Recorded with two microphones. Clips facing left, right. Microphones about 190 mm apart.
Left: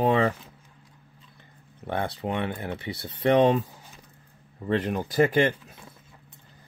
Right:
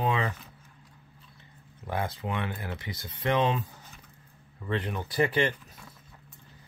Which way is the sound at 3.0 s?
40° left (ahead or behind).